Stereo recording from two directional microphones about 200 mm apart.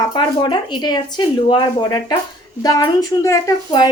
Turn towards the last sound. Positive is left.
turn(degrees=15)  # may be behind; listen again after turning